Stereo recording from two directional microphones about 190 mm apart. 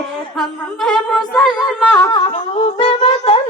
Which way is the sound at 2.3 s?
35° left (ahead or behind).